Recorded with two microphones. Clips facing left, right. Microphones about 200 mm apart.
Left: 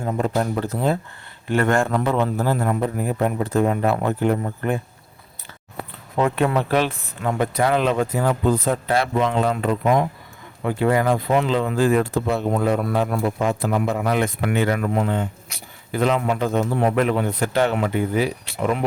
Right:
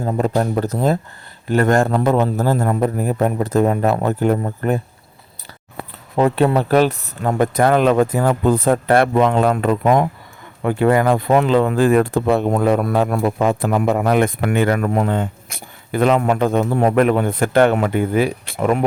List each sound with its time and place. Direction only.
0.0 s a man's voice: 40° right (ahead or behind)
6.1 s speech: 30° right (ahead or behind); by 18.9 s 50° right (ahead or behind)